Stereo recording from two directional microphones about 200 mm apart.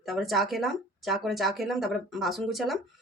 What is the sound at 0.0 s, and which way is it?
Speech, centre (ahead or behind).